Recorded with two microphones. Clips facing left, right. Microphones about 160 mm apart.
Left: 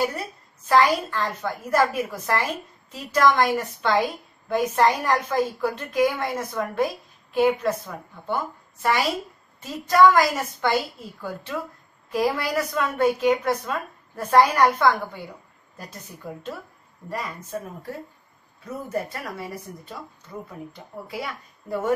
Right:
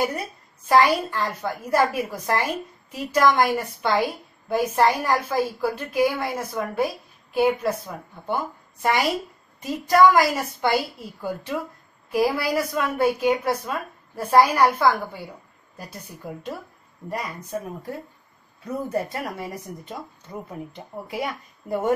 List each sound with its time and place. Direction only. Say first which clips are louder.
0.7 s a woman's voice: right 1 dB; 10° right (ahead or behind)
9.6 s a woman's voice: right 1 dB; 15° right (ahead or behind)
17.1 s a woman's voice: right 1 dB; 15° right (ahead or behind)